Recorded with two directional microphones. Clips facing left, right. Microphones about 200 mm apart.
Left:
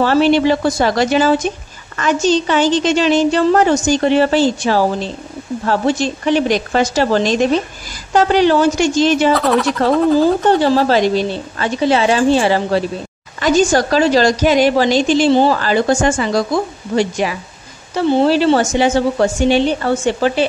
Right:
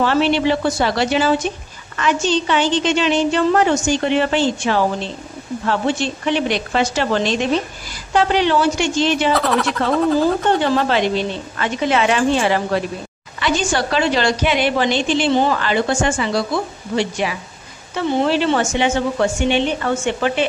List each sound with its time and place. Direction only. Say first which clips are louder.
0.0 s a woman's voice: left 4 dB; 40° left (ahead or behind)
9.3 s speech: left 4 dB; centre (ahead or behind)
10.6 s a woman's voice: left 4 dB; 35° left (ahead or behind)
13.4 s a woman's voice: left 7 dB; 40° left (ahead or behind)